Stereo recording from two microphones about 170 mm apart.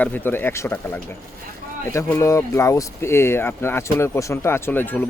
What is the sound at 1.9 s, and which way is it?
Speech, 15° left (ahead or behind).